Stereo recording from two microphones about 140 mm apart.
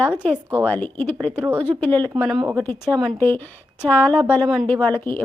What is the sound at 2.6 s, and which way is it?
Speech, 15° left (ahead or behind).